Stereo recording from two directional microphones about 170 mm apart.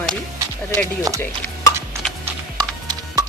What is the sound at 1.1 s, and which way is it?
Speech, 20° right (ahead or behind).